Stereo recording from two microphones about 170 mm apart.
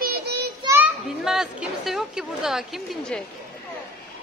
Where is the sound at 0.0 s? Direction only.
65° right (ahead or behind).